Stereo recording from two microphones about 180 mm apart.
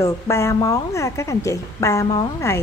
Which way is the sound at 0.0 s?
15° left (ahead or behind).